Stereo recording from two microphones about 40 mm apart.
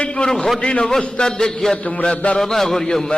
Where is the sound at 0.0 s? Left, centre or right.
Centre.